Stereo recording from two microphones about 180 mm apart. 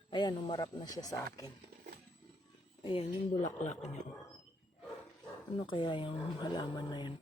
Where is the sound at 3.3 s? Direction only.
40° left (ahead or behind).